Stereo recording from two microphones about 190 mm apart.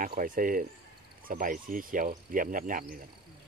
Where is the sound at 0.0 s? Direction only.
45° right (ahead or behind).